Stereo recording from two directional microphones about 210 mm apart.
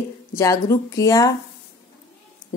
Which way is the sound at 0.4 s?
15° left (ahead or behind).